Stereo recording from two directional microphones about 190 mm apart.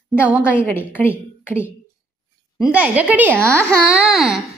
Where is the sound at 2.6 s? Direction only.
10° right (ahead or behind).